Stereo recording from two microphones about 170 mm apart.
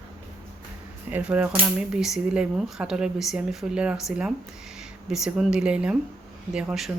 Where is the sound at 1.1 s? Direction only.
10° right (ahead or behind).